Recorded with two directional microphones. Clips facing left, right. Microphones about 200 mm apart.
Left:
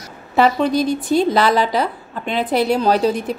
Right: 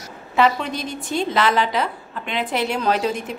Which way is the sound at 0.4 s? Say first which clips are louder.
Left 5 dB; 35° left (ahead or behind).